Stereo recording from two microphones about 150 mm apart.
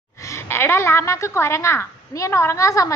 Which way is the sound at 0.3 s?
15° left (ahead or behind).